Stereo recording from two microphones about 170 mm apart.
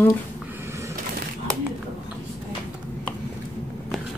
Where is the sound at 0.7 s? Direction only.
15° right (ahead or behind).